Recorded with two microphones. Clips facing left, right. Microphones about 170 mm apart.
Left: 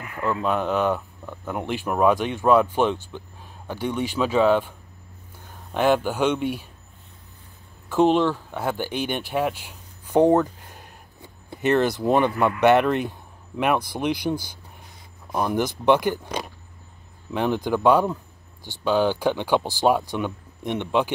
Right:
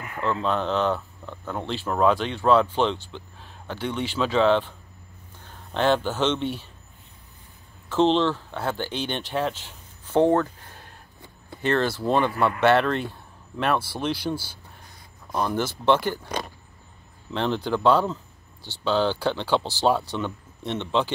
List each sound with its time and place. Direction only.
0.2 s speech: 10° left (ahead or behind)
7.9 s speech: 15° left (ahead or behind)
17.3 s speech: 10° left (ahead or behind)